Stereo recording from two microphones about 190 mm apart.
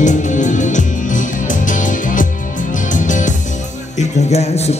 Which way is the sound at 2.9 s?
40° left (ahead or behind).